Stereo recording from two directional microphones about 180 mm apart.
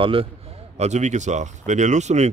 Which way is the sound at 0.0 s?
30° right (ahead or behind).